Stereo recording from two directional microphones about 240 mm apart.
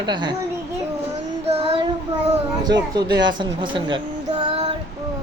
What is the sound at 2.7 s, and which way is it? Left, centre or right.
A man's voice, centre.